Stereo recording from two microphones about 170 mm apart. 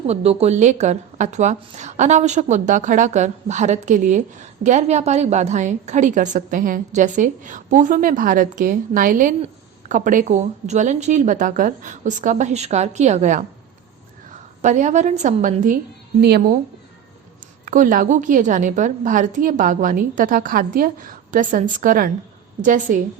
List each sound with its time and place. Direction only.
0.1 s a woman's voice: 35° right (ahead or behind)
14.6 s a woman's voice: 45° right (ahead or behind)
16.2 s a woman's voice: 70° right (ahead or behind)
17.7 s a woman's voice: 50° right (ahead or behind)